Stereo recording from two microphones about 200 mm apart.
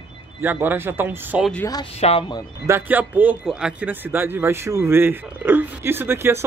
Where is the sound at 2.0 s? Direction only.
30° left (ahead or behind).